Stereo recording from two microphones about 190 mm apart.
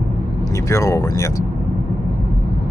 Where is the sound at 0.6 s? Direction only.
15° left (ahead or behind).